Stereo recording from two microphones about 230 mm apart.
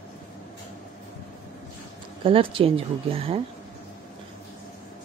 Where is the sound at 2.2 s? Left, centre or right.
Right.